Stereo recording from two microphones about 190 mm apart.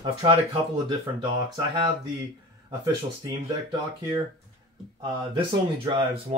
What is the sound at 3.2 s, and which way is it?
Speech, 25° right (ahead or behind).